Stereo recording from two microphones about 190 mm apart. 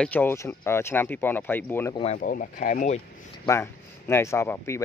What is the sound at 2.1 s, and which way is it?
Speech, 45° left (ahead or behind).